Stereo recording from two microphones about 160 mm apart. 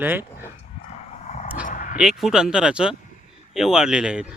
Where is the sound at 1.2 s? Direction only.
45° left (ahead or behind).